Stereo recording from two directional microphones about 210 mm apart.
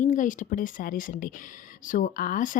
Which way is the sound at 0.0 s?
35° left (ahead or behind).